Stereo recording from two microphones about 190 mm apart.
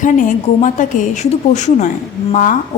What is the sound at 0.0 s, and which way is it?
A woman's voice, 45° left (ahead or behind).